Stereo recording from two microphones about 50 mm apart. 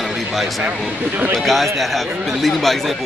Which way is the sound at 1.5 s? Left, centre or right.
Centre.